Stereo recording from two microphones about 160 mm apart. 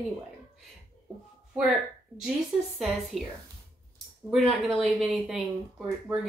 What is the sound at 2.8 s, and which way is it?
Speech, centre (ahead or behind).